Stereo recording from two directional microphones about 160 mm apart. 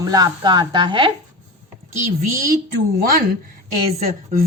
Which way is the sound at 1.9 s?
55° right (ahead or behind).